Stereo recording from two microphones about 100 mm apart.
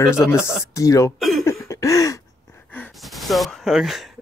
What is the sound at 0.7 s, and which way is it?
Speech, 30° left (ahead or behind).